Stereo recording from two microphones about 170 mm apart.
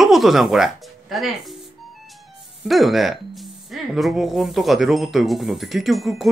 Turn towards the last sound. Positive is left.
turn(degrees=0)  # may be behind; listen again after turning